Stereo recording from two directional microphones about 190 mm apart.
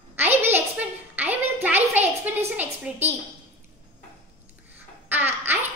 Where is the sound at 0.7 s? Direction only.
10° right (ahead or behind).